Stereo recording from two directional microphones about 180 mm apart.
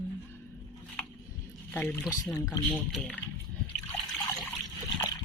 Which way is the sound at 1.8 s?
10° left (ahead or behind).